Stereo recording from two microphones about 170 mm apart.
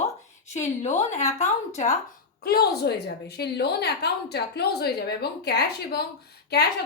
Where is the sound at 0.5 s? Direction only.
45° left (ahead or behind).